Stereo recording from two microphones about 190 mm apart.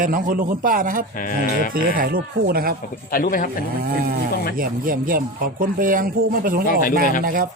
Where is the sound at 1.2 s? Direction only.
45° left (ahead or behind).